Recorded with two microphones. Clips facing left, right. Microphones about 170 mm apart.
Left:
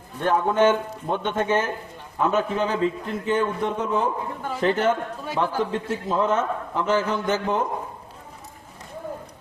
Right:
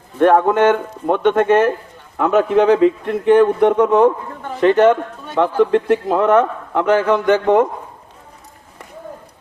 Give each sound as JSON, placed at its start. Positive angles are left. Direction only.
{"t": 0.2, "sound": "a man's voice", "side_deg": -70}
{"t": 4.6, "sound": "a man's voice", "side_deg": -80}
{"t": 5.7, "sound": "a man's voice", "side_deg": -90}